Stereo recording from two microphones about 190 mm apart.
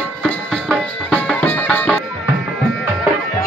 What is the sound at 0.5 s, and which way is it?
Music, 5° left (ahead or behind).